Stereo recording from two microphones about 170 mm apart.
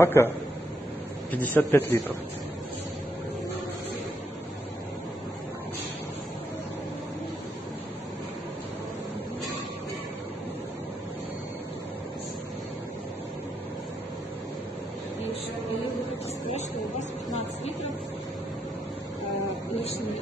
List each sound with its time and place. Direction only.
0.0 s a man's voice: 15° left (ahead or behind)
1.4 s a man's voice: 10° left (ahead or behind)
19.7 s a sound: 40° left (ahead or behind)